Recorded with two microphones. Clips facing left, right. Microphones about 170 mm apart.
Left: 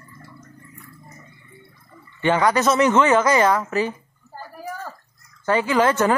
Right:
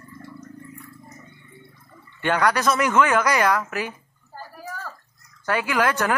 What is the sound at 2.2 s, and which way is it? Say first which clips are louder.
Speech: left 3 dB; 15° left (ahead or behind).